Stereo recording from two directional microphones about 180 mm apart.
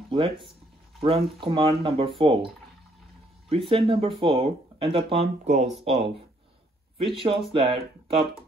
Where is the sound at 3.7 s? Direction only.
30° right (ahead or behind).